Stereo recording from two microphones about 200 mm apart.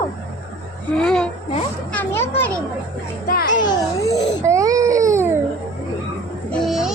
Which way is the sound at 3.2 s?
45° left (ahead or behind).